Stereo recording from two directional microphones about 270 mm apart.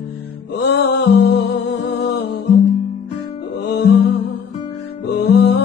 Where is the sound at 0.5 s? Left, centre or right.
Left.